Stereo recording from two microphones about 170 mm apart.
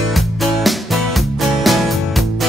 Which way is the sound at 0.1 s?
Centre (ahead or behind).